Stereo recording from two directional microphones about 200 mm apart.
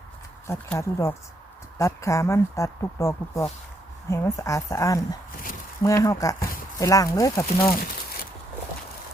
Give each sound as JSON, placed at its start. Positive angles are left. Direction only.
{"t": 0.4, "sound": "speech", "side_deg": 10}
{"t": 7.7, "sound": "crumpling", "side_deg": 45}